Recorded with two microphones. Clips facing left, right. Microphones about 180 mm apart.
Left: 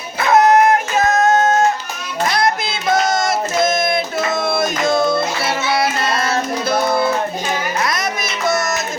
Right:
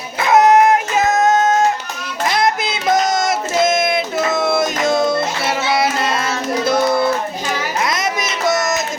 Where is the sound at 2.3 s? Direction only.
20° right (ahead or behind).